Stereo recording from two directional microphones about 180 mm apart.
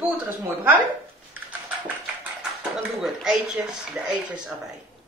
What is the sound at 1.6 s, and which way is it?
Speech, 10° right (ahead or behind).